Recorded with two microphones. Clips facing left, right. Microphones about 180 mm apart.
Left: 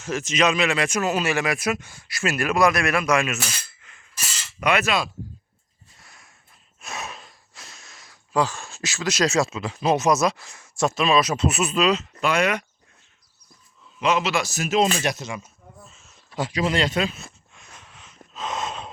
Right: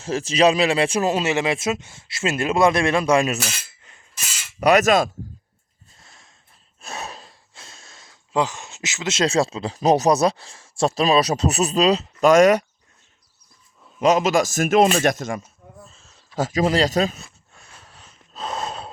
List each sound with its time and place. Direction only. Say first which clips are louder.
0.0 s speech: right 5 dB; 30° right (ahead or behind)
3.8 s a sound: right 2 dB; 35° right (ahead or behind)
4.6 s speech: right 7 dB; 40° right (ahead or behind)
6.0 s a sound: even; 25° right (ahead or behind)
6.8 s speech: right 1 dB; 35° right (ahead or behind)
14.0 s speech: right 5 dB; 45° right (ahead or behind)
15.9 s speech: left 1 dB; 35° right (ahead or behind)
17.5 s wheeze: even; 35° right (ahead or behind)
18.3 s gasp: right 1 dB; 35° right (ahead or behind)